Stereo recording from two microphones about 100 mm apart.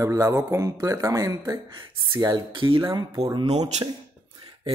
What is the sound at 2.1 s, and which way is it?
Speech, 45° right (ahead or behind).